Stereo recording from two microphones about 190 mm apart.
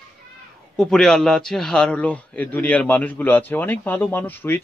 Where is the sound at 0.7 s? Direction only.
Centre (ahead or behind).